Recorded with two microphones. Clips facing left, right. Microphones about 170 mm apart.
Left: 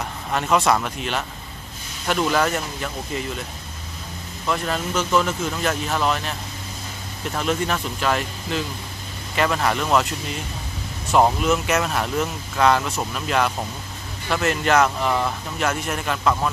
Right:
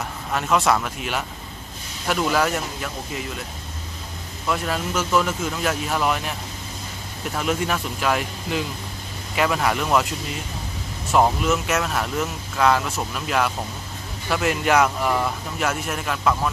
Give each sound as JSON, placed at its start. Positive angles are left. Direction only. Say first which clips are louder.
{"t": 0.3, "sound": "speech", "louder": "left 1 dB", "side_deg": 0}
{"t": 4.5, "sound": "speech", "louder": "even", "side_deg": -5}
{"t": 7.3, "sound": "speech", "louder": "even", "side_deg": -5}
{"t": 11.4, "sound": "speech", "louder": "left 2 dB", "side_deg": 0}